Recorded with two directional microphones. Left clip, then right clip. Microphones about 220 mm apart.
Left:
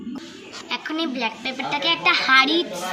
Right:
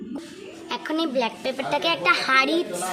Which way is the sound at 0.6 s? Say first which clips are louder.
Even; 35° right (ahead or behind).